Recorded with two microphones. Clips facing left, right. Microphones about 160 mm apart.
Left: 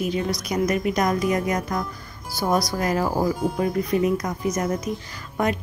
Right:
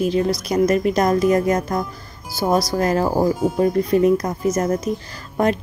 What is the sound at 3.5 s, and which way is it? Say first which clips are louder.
A woman's voice: right 5 dB; 40° right (ahead or behind).